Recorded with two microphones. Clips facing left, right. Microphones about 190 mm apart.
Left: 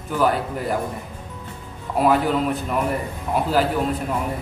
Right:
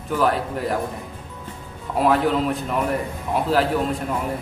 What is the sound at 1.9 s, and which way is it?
A man's voice, centre (ahead or behind).